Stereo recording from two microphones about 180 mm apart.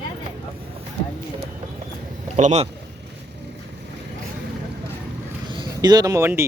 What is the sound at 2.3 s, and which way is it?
Speech, 40° right (ahead or behind).